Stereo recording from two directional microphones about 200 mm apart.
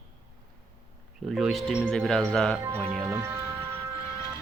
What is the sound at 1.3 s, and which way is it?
Speech, centre (ahead or behind).